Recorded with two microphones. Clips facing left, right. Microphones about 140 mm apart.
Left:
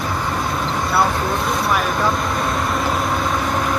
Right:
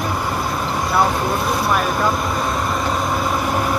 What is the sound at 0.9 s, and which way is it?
Speech, 5° right (ahead or behind).